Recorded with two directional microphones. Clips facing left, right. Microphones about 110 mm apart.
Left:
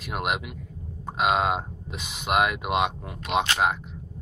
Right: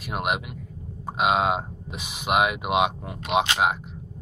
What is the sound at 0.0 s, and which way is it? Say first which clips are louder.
Speech: right 1 dB; 5° right (ahead or behind).